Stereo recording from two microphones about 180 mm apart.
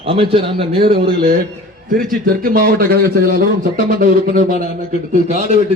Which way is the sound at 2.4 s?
55° right (ahead or behind).